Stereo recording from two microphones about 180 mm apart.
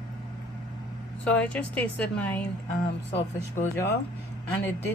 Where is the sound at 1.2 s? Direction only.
10° left (ahead or behind).